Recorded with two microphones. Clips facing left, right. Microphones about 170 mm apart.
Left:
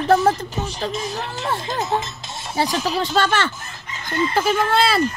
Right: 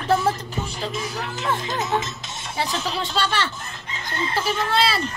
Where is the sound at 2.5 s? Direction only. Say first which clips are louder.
Left 5 dB; 40° left (ahead or behind).